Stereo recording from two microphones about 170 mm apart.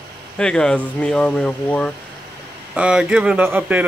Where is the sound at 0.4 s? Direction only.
5° left (ahead or behind).